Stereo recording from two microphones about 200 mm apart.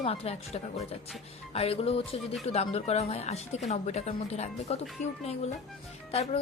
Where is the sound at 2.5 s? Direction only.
30° left (ahead or behind).